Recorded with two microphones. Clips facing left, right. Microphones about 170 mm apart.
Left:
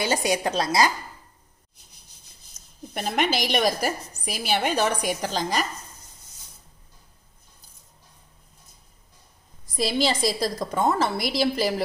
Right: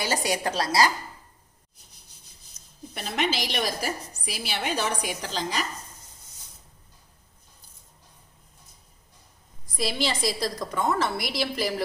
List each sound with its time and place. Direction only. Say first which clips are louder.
0.0 s a woman's voice: left 3 dB; 20° left (ahead or behind)
2.9 s a woman's voice: left 3 dB; 50° left (ahead or behind)
9.8 s a woman's voice: left 4 dB; 35° left (ahead or behind)